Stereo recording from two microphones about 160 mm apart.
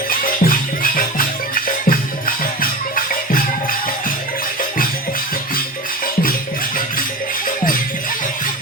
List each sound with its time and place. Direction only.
0.1 s music: 60° left (ahead or behind)
7.4 s music: 60° left (ahead or behind)